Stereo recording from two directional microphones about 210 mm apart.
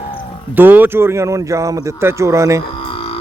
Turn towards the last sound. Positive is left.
turn(degrees=25)  # may be behind; listen again after turning